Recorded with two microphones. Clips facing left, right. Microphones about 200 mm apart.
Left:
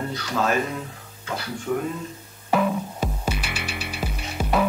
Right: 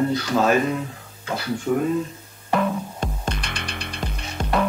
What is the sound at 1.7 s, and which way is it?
Speech, 25° right (ahead or behind).